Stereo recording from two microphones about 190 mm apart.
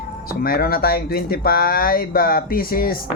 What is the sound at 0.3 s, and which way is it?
Speech, 50° left (ahead or behind).